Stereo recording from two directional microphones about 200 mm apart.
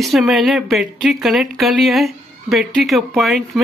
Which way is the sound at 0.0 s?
Centre (ahead or behind).